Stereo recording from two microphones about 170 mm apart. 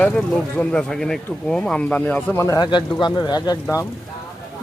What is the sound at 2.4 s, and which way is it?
Speech, 25° left (ahead or behind).